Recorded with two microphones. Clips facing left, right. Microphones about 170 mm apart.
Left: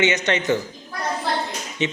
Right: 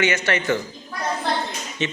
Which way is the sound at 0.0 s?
20° left (ahead or behind).